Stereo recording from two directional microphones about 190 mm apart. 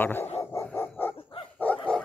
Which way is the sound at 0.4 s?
15° left (ahead or behind).